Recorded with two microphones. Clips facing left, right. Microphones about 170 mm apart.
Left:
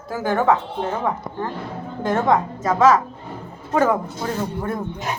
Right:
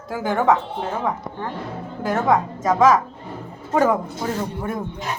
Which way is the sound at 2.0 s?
10° right (ahead or behind).